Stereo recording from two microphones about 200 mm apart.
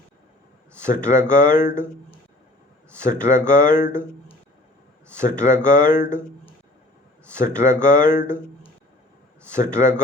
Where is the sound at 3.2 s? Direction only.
15° right (ahead or behind).